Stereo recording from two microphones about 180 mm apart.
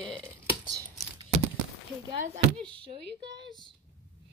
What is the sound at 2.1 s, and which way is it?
Speech, 40° right (ahead or behind).